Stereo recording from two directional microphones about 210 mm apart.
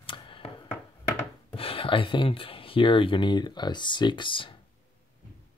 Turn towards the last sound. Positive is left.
turn(degrees=25)  # may be behind; listen again after turning